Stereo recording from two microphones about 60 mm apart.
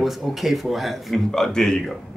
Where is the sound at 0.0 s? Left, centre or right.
Centre.